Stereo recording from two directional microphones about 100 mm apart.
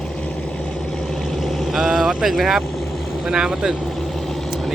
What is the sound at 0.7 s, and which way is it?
Vehicle, 5° left (ahead or behind).